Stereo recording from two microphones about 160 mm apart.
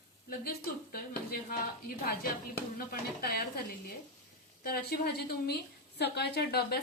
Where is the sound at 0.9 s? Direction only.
70° left (ahead or behind).